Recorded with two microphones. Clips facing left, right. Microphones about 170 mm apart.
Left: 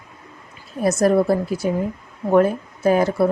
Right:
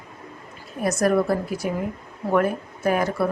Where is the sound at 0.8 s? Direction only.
25° left (ahead or behind).